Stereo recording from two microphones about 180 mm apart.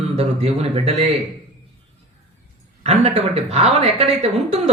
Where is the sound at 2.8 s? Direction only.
35° right (ahead or behind).